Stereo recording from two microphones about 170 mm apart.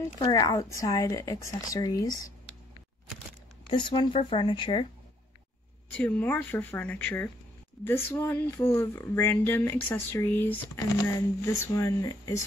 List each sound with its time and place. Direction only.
0.0 s speech: 20° left (ahead or behind)
3.7 s speech: 30° left (ahead or behind)
5.9 s speech: 10° left (ahead or behind)